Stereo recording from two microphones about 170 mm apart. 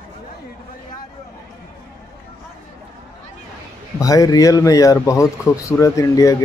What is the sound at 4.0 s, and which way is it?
A man's voice, 20° left (ahead or behind).